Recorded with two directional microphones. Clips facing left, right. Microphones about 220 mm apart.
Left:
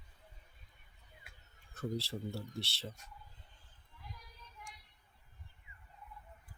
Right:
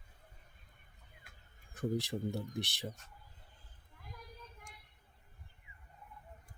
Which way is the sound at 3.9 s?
50° right (ahead or behind).